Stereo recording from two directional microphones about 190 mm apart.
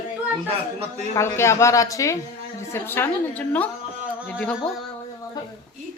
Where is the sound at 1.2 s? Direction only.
15° left (ahead or behind).